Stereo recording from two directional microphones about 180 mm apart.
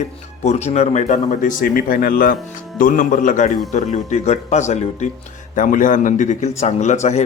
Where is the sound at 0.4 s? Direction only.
40° left (ahead or behind).